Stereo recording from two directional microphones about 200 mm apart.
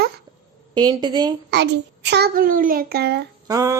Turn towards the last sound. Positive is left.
turn(degrees=-15)  # may be behind; listen again after turning